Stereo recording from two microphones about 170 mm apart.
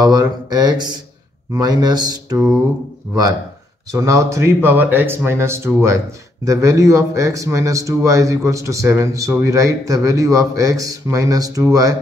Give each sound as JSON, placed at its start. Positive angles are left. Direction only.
{"t": 0.0, "sound": "a man's voice", "side_deg": -25}
{"t": 2.3, "sound": "a sound", "side_deg": -5}
{"t": 3.9, "sound": "a man's voice", "side_deg": -15}